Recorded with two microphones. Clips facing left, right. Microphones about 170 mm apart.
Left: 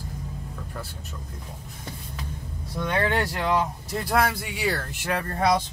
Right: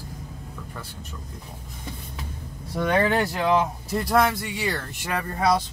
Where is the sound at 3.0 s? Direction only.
20° right (ahead or behind).